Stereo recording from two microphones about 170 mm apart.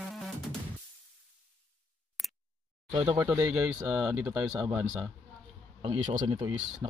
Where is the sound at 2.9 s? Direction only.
30° right (ahead or behind).